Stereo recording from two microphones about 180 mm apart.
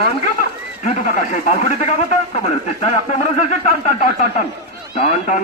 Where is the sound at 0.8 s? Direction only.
45° left (ahead or behind).